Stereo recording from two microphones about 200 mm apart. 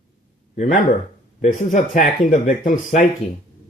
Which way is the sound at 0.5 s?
40° left (ahead or behind).